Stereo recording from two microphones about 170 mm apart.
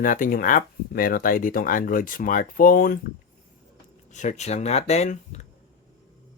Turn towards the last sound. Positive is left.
turn(degrees=40)  # may be behind; listen again after turning